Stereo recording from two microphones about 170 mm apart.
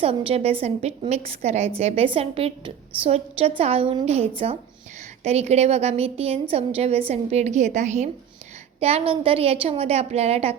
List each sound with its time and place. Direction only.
0.0 s a woman's voice: 35° right (ahead or behind)
8.8 s a woman's voice: 35° right (ahead or behind)